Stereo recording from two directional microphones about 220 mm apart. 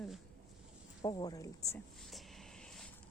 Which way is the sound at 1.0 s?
15° left (ahead or behind).